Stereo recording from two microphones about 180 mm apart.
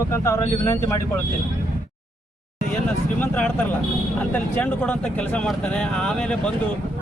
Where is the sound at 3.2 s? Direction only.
10° left (ahead or behind).